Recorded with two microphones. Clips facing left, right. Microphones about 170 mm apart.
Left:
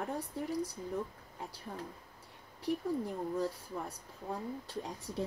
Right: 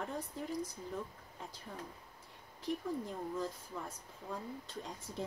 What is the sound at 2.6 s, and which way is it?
A woman's voice, 65° left (ahead or behind).